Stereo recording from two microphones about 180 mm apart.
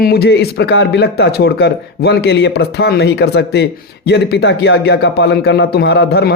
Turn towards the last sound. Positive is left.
turn(degrees=60)  # may be behind; listen again after turning